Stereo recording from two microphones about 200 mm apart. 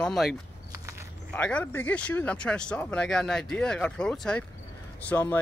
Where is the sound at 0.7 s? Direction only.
15° right (ahead or behind).